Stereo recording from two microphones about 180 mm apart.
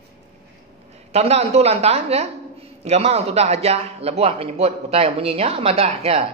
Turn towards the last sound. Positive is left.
turn(degrees=-35)  # may be behind; listen again after turning